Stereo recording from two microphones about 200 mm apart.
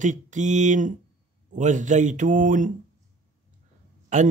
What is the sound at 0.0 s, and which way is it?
Speech, 40° right (ahead or behind).